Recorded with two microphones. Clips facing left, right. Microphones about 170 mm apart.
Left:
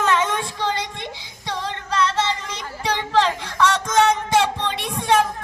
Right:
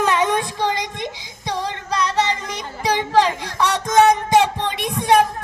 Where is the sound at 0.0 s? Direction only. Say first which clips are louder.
Right 2 dB; 15° right (ahead or behind).